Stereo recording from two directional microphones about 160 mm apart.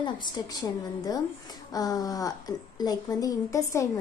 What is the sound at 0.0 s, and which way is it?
A woman's voice, 25° left (ahead or behind).